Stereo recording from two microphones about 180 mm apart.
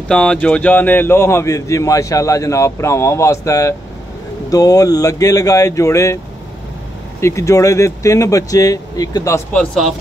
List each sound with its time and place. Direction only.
0.1 s speech: 5° left (ahead or behind)
7.2 s speech: 15° left (ahead or behind)